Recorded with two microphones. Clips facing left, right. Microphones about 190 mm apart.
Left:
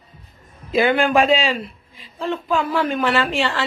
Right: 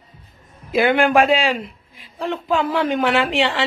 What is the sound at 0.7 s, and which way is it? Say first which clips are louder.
Speech: right 1 dB; 15° right (ahead or behind).